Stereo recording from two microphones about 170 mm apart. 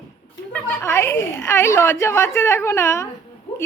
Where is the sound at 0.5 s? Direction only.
15° left (ahead or behind).